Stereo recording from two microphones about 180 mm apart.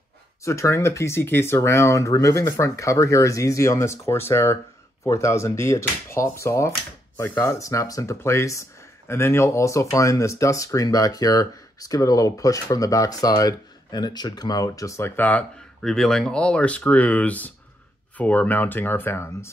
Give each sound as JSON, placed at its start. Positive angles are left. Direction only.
{"t": 0.5, "sound": "speech", "side_deg": 15}